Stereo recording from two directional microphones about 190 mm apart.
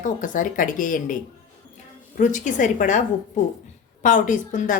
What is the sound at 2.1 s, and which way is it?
A woman's voice, 40° left (ahead or behind).